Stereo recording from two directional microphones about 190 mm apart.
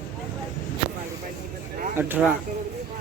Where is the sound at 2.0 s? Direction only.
10° right (ahead or behind).